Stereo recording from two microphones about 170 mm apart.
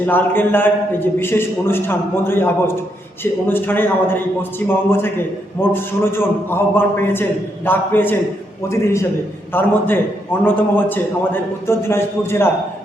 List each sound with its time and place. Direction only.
0.0 s a man's voice: 10° left (ahead or behind)